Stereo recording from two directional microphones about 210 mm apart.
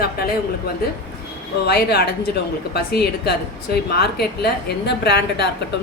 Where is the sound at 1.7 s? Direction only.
50° left (ahead or behind).